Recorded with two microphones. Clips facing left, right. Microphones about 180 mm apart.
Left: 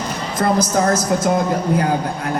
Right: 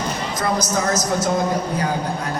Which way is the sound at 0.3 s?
55° left (ahead or behind).